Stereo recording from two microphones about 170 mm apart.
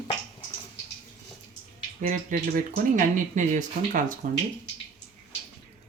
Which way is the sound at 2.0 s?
50° right (ahead or behind).